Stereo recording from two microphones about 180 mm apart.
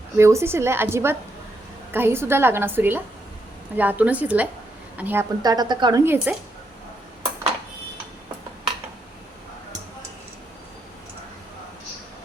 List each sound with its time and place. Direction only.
0.2 s a woman's voice: 15° right (ahead or behind)
5.4 s speech: 20° right (ahead or behind)